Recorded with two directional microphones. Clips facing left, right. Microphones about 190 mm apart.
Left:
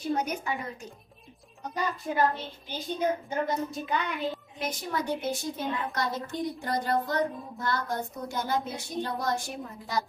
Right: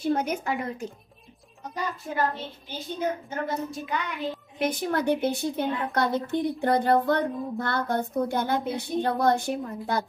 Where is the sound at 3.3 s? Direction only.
20° left (ahead or behind).